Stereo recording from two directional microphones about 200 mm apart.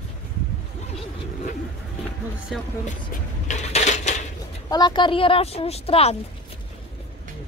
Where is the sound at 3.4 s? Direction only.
35° left (ahead or behind).